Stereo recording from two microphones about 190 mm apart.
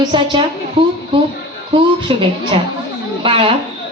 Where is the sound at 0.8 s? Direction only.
25° right (ahead or behind).